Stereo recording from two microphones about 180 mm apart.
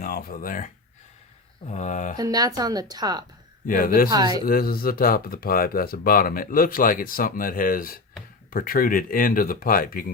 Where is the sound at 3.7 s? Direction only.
50° left (ahead or behind).